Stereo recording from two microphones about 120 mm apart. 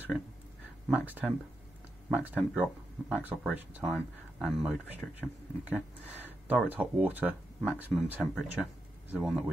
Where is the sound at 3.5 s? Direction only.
10° right (ahead or behind).